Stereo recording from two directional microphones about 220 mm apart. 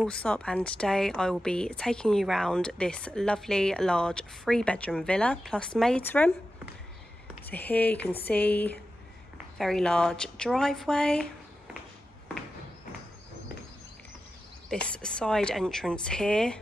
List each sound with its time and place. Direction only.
0.0 s a woman's voice: 5° left (ahead or behind)
7.4 s speech: 10° left (ahead or behind)
14.7 s a woman's voice: 5° left (ahead or behind)